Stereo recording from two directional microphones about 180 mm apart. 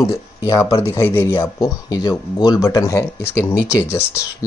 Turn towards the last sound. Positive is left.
turn(degrees=15)  # may be behind; listen again after turning